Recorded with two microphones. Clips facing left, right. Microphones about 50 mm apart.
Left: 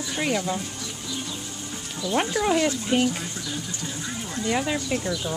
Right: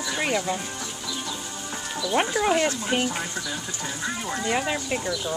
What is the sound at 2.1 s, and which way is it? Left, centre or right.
Speech, centre.